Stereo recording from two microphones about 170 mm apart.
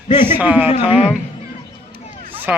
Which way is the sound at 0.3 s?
10° right (ahead or behind).